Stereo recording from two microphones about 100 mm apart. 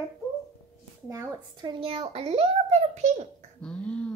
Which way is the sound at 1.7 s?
70° right (ahead or behind).